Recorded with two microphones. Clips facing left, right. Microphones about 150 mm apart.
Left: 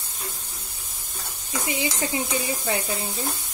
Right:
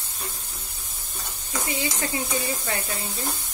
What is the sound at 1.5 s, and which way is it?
Speech, 15° left (ahead or behind).